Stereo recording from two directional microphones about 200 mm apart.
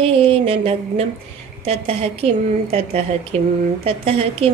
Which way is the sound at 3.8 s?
30° right (ahead or behind).